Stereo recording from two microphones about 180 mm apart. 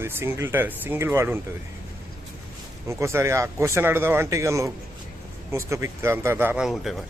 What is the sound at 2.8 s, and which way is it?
Speech, 15° right (ahead or behind).